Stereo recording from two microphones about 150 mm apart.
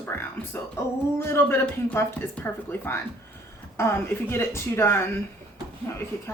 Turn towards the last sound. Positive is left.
turn(degrees=20)  # may be behind; listen again after turning